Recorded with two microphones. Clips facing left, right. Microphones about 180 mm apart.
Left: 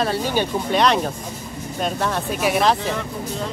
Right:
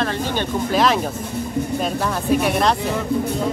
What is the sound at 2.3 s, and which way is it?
Speech, centre (ahead or behind).